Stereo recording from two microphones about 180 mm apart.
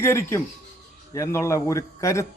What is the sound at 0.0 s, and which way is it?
A man's voice, 15° left (ahead or behind).